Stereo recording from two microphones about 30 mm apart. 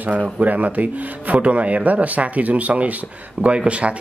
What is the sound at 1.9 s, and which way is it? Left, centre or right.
Speech, right.